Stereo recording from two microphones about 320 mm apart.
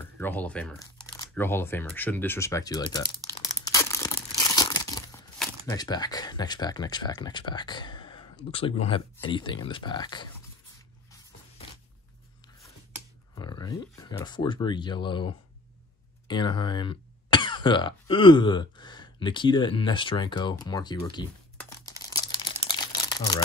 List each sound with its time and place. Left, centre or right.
0.2 s speech: centre
4.6 s tearing: centre
5.4 s speech: centre
13.3 s speech: centre
20.6 s crumpling: centre